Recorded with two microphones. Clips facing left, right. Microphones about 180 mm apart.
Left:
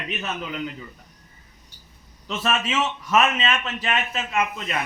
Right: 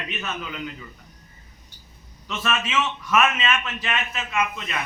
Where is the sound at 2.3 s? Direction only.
35° left (ahead or behind).